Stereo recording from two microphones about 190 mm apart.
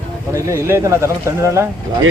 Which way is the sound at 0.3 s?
15° right (ahead or behind).